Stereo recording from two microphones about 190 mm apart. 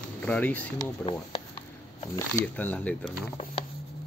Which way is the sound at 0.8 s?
30° left (ahead or behind).